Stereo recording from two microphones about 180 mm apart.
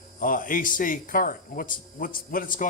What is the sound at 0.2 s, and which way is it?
Speech, 50° left (ahead or behind).